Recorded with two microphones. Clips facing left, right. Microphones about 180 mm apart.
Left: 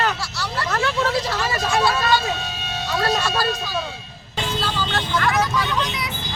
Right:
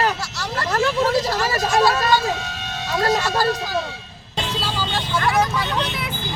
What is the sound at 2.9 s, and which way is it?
Speech, 20° right (ahead or behind).